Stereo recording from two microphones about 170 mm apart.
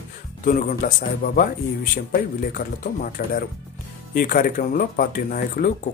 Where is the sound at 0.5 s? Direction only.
50° left (ahead or behind).